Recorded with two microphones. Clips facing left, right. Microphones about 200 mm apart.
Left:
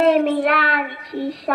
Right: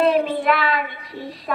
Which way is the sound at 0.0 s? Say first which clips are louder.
Left 3 dB; 70° left (ahead or behind).